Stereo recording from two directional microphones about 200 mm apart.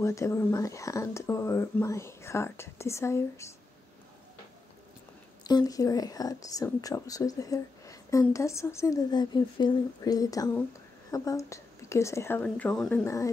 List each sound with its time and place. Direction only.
0.0 s speech: 15° left (ahead or behind)
5.4 s speech: 20° left (ahead or behind); by 13.0 s 5° left (ahead or behind)
13.0 s speech: 15° left (ahead or behind)